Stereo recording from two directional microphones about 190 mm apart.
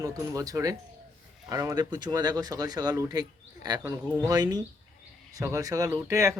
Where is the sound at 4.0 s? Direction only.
5° right (ahead or behind).